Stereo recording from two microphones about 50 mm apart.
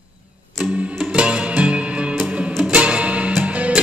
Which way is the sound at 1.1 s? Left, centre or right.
Right.